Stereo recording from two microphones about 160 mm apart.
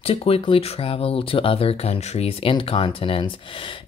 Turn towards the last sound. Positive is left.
turn(degrees=35)  # may be behind; listen again after turning